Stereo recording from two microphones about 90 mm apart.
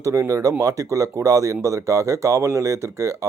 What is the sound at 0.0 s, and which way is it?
Speech, 35° right (ahead or behind).